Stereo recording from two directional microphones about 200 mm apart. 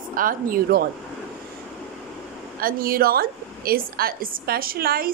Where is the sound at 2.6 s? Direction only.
45° right (ahead or behind).